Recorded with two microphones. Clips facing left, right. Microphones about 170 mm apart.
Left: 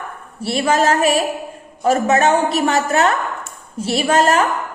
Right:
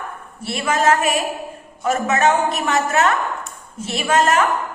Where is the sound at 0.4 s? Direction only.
35° left (ahead or behind).